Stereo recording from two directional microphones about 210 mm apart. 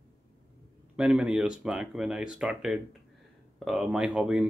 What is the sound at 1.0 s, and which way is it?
Speech, 5° right (ahead or behind).